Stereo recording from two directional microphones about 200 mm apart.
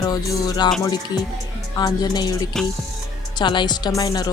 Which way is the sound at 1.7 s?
20° left (ahead or behind).